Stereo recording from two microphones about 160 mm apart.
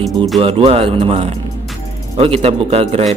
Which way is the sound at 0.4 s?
35° right (ahead or behind).